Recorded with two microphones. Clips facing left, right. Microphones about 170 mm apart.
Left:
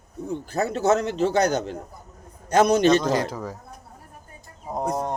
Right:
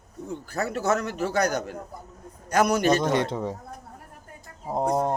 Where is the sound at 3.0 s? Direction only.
25° right (ahead or behind).